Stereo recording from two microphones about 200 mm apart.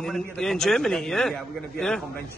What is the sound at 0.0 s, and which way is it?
A man's voice, centre (ahead or behind).